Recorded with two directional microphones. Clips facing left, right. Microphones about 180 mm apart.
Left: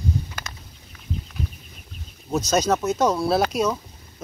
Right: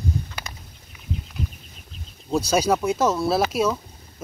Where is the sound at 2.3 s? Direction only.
10° right (ahead or behind).